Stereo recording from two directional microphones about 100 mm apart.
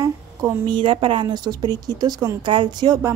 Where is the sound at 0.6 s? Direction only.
55° right (ahead or behind).